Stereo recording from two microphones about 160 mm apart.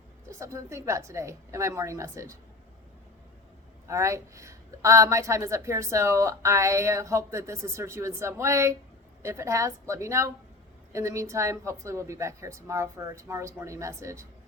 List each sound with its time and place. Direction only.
0.3 s a woman's voice: 20° right (ahead or behind)
3.8 s a woman's voice: 20° right (ahead or behind)